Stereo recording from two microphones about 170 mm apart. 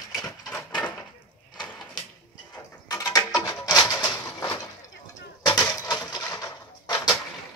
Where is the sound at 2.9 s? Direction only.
20° left (ahead or behind).